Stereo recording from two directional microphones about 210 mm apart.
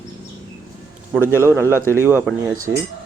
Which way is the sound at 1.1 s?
10° right (ahead or behind).